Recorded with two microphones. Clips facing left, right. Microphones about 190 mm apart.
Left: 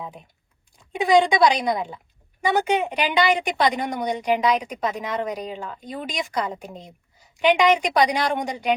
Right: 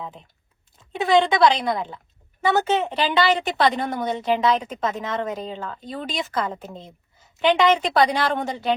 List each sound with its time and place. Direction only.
0.0 s a woman's voice: 15° left (ahead or behind)